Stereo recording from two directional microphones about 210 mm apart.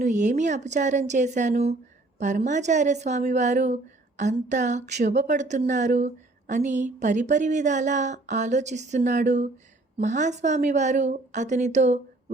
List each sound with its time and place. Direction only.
0.0 s speech: 35° right (ahead or behind)